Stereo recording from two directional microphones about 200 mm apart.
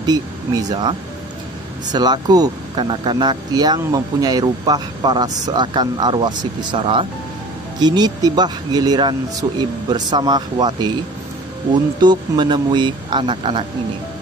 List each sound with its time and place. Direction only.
0.0 s speech: 20° right (ahead or behind)